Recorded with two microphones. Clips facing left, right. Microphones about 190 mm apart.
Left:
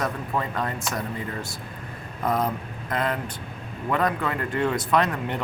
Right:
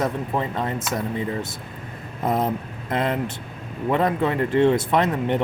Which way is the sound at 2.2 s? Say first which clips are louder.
Right 2 dB; 25° right (ahead or behind).